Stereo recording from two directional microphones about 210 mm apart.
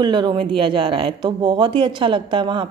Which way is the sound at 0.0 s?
20° right (ahead or behind).